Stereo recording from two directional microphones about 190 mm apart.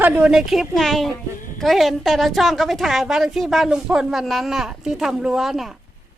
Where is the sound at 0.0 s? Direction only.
5° right (ahead or behind).